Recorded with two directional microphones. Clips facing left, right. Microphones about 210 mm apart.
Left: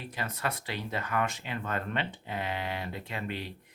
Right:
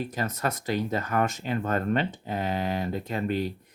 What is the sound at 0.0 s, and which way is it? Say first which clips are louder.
Speech: right 6 dB; 40° right (ahead or behind).